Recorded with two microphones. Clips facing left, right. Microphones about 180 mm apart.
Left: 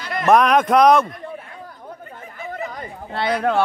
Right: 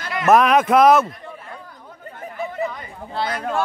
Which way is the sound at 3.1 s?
65° left (ahead or behind).